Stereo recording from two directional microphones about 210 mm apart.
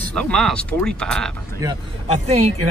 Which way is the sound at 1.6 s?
15° right (ahead or behind).